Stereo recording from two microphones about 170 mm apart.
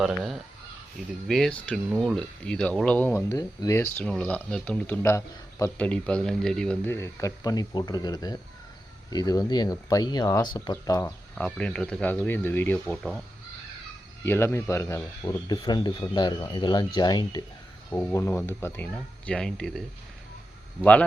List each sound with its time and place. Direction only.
0.0 s speech: centre (ahead or behind); by 5.8 s 15° left (ahead or behind)
5.8 s speech: 5° left (ahead or behind)
11.3 s speech: 5° left (ahead or behind)
14.3 s speech: 15° left (ahead or behind)
17.9 s speech: 15° left (ahead or behind)